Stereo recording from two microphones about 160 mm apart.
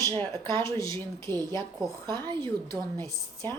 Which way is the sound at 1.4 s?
25° right (ahead or behind).